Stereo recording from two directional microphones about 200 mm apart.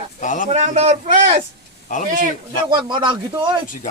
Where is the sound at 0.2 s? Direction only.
40° left (ahead or behind).